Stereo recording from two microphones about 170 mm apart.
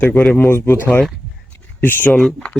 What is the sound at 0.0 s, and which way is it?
Speech, 10° left (ahead or behind).